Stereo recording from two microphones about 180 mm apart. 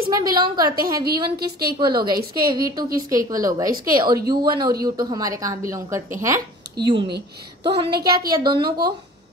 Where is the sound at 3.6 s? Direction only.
50° right (ahead or behind).